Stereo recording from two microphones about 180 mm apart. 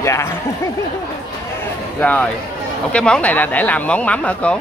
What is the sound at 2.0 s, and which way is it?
Speech, 10° left (ahead or behind).